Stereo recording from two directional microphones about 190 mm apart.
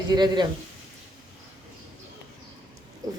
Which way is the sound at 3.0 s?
20° right (ahead or behind).